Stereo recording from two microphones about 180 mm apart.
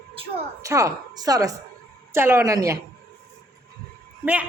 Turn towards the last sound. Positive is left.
turn(degrees=-10)  # may be behind; listen again after turning